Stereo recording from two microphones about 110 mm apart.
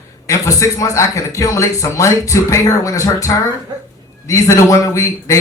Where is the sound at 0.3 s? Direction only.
30° left (ahead or behind).